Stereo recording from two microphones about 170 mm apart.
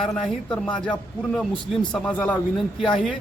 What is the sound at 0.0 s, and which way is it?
Speech, centre (ahead or behind).